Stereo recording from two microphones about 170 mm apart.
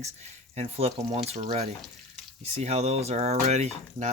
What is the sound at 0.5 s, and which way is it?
Speech, 40° right (ahead or behind).